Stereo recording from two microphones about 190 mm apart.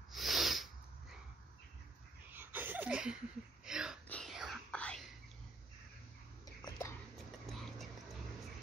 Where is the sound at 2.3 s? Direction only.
10° right (ahead or behind).